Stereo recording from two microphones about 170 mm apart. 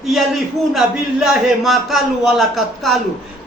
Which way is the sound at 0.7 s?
Centre (ahead or behind).